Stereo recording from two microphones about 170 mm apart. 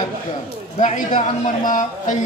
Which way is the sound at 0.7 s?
45° left (ahead or behind).